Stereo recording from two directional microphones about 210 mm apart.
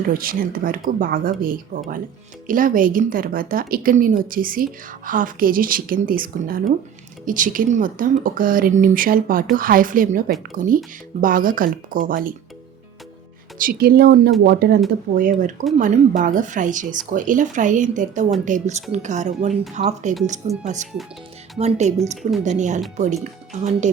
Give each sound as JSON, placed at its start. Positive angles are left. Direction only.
{"t": 0.1, "sound": "a woman's voice", "side_deg": -45}
{"t": 13.6, "sound": "a woman's voice", "side_deg": -45}
{"t": 21.6, "sound": "a woman's voice", "side_deg": -35}